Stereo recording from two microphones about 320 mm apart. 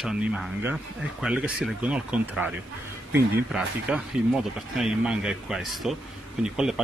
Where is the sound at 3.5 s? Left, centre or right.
Centre.